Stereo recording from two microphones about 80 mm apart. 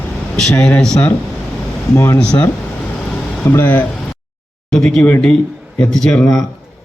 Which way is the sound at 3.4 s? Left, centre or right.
Left.